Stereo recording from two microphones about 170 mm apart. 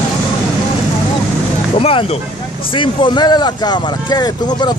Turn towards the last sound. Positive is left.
turn(degrees=25)  # may be behind; listen again after turning